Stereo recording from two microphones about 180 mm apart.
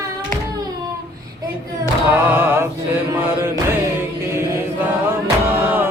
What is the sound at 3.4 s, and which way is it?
Chant, 15° right (ahead or behind).